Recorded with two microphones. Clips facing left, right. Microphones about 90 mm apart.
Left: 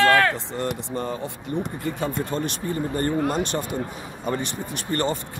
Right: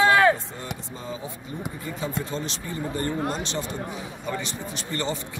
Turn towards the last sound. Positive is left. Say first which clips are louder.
# left 4 dB
turn(degrees=50)  # may be behind; listen again after turning